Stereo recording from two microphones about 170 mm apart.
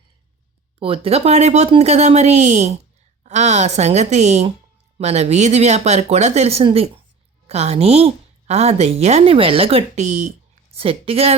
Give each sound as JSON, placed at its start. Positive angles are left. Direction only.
{"t": 0.8, "sound": "a woman's voice", "side_deg": -35}